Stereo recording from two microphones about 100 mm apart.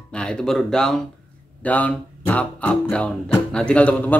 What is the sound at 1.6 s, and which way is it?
Speech, 15° left (ahead or behind).